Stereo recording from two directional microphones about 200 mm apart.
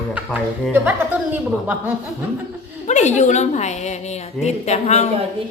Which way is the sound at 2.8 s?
35° left (ahead or behind).